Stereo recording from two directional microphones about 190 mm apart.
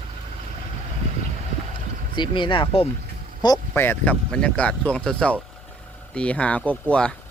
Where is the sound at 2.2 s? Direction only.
25° left (ahead or behind).